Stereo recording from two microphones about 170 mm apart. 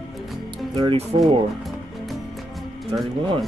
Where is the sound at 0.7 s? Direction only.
30° right (ahead or behind).